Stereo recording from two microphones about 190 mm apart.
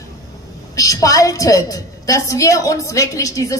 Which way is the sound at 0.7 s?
15° left (ahead or behind).